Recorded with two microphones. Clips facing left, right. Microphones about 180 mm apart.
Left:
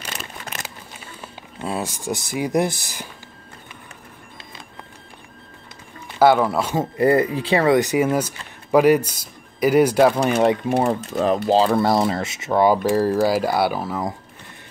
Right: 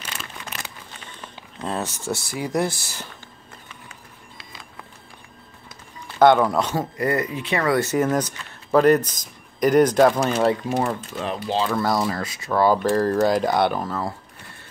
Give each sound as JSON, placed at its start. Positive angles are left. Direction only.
{"t": 0.9, "sound": "speech", "side_deg": 10}
{"t": 6.1, "sound": "speech", "side_deg": 5}
{"t": 6.8, "sound": "speech", "side_deg": 30}
{"t": 10.8, "sound": "speech", "side_deg": 35}
{"t": 12.7, "sound": "speech", "side_deg": 10}